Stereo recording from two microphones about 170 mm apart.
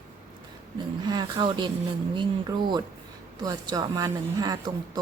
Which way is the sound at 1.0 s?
25° right (ahead or behind).